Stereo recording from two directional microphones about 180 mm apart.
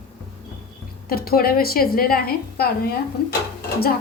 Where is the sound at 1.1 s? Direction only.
55° left (ahead or behind).